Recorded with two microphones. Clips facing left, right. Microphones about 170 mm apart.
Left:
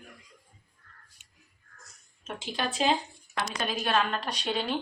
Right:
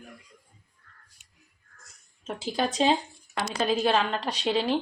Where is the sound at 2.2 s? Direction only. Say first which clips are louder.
Right 5 dB; 40° right (ahead or behind).